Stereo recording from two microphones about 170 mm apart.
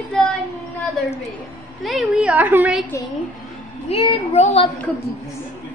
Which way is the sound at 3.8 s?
35° left (ahead or behind).